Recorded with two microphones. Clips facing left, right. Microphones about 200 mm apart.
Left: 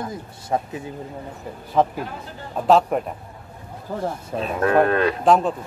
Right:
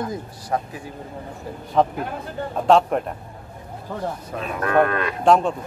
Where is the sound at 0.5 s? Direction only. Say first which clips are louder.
Left 1 dB; 25° left (ahead or behind).